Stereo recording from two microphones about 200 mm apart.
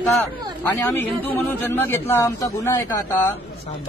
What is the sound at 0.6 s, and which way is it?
A man's voice, 10° left (ahead or behind).